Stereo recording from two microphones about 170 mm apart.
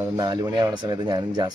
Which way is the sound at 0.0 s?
20° right (ahead or behind).